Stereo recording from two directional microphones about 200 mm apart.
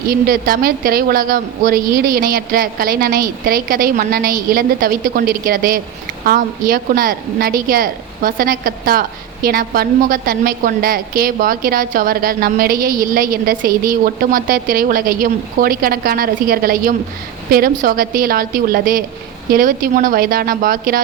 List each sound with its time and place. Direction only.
0.1 s a woman's voice: 45° right (ahead or behind)